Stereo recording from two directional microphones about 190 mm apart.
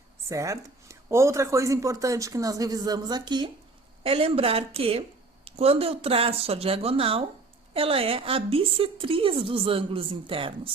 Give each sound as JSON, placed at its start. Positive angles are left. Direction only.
{"t": 0.3, "sound": "a woman's voice", "side_deg": -15}